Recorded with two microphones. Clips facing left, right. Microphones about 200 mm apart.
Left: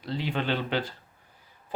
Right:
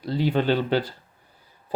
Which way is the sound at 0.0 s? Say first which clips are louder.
Right 7 dB; 40° right (ahead or behind).